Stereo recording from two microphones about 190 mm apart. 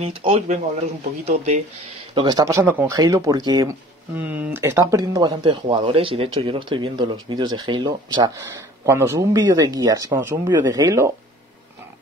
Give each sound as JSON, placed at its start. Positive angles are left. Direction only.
{"t": 0.0, "sound": "speech", "side_deg": -30}
{"t": 2.1, "sound": "speech", "side_deg": -20}
{"t": 4.1, "sound": "speech", "side_deg": -10}